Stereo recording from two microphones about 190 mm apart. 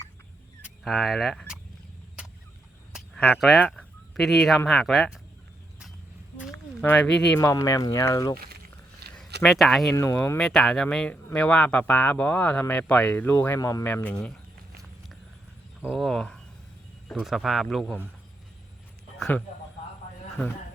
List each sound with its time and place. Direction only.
0.6 s speech: centre (ahead or behind)
3.2 s speech: 5° left (ahead or behind)
6.8 s speech: 5° left (ahead or behind)
7.3 s speech: 15° left (ahead or behind)
9.0 s a sound: 60° right (ahead or behind)
9.4 s speech: centre (ahead or behind)
9.9 s speech: 15° left (ahead or behind)
15.8 s speech: centre (ahead or behind)